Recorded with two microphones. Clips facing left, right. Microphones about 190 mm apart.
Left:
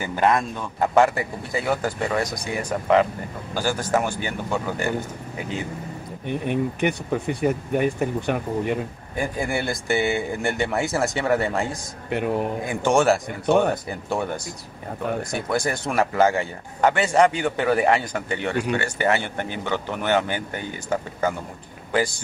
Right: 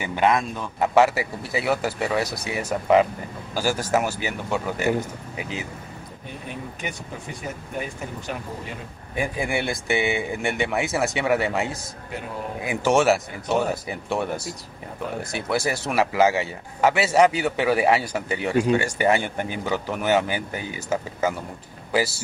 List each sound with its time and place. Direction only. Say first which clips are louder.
0.0 s speech: even; centre (ahead or behind)
6.4 s speech: left 11 dB; 65° left (ahead or behind)
9.1 s speech: even; centre (ahead or behind)
12.1 s speech: left 10 dB; 65° left (ahead or behind)
12.6 s speech: right 1 dB; 5° right (ahead or behind)